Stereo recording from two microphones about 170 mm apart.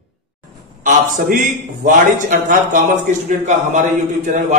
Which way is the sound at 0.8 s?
50° right (ahead or behind).